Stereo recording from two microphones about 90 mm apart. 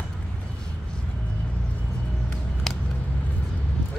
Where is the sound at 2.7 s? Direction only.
5° left (ahead or behind).